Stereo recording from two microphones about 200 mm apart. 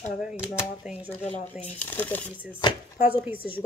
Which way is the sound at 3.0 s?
10° right (ahead or behind).